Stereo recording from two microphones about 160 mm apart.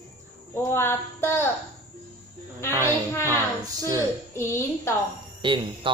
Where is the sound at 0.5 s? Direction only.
15° left (ahead or behind).